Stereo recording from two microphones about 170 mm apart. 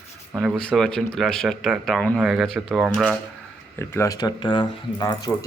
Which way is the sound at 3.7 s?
15° left (ahead or behind).